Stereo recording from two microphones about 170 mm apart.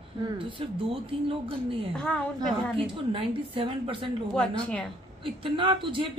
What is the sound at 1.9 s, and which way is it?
Speech, 5° left (ahead or behind).